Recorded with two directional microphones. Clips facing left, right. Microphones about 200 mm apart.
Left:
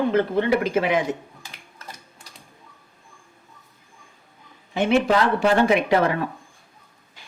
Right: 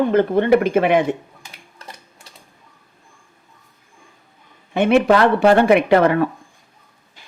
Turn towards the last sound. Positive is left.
turn(degrees=-60)  # may be behind; listen again after turning